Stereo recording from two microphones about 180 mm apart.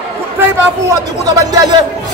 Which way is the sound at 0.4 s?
20° right (ahead or behind).